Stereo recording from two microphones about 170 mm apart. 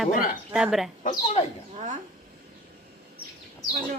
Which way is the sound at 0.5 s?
5° right (ahead or behind).